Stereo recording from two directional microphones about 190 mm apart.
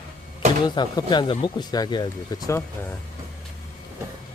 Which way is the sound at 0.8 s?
25° left (ahead or behind).